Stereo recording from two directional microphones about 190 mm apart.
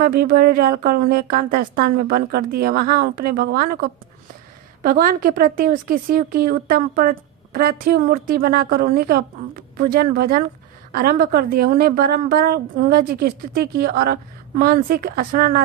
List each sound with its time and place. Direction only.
0.0 s speech: 50° right (ahead or behind)
4.8 s speech: 50° right (ahead or behind)